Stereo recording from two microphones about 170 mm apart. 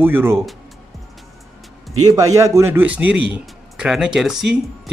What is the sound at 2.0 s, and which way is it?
Speech, 20° right (ahead or behind).